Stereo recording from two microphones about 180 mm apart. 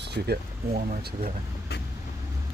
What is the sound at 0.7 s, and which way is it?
Speech, 40° right (ahead or behind).